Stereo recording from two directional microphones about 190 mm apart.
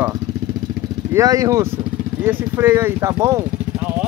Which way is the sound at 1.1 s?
15° right (ahead or behind).